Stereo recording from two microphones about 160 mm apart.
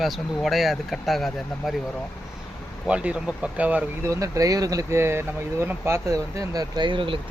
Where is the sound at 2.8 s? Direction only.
5° right (ahead or behind).